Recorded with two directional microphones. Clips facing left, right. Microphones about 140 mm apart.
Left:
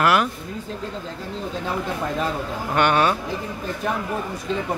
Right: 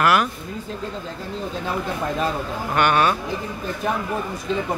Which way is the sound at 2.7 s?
25° left (ahead or behind).